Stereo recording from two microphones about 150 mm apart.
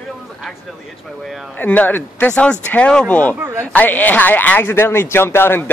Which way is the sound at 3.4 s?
20° right (ahead or behind).